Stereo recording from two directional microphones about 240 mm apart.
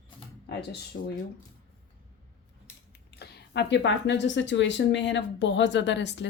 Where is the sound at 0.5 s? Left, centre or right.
Left.